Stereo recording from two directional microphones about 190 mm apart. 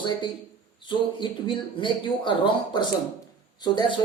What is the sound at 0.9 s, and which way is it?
Speech, 25° left (ahead or behind).